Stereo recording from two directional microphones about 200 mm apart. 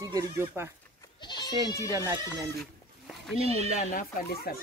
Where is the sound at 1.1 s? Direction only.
20° left (ahead or behind).